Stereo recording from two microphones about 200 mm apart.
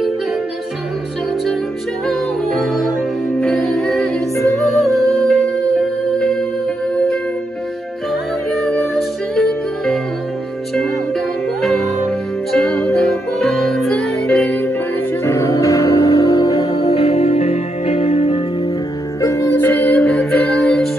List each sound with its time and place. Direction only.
2.0 s music: centre (ahead or behind)
8.1 s music: 5° left (ahead or behind); by 18.4 s 30° left (ahead or behind)
19.2 s music: 15° left (ahead or behind)